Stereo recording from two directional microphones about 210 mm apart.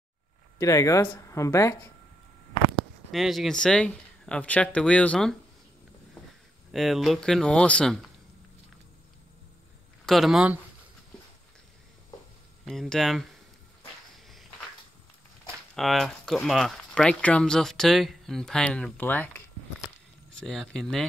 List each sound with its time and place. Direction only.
0.6 s speech: 15° left (ahead or behind)
3.1 s speech: centre (ahead or behind)
6.7 s speech: centre (ahead or behind)
10.0 s speech: centre (ahead or behind)
12.6 s speech: centre (ahead or behind)
15.7 s speech: centre (ahead or behind)